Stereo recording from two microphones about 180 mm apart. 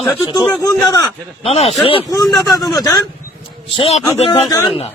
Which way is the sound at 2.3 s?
20° left (ahead or behind).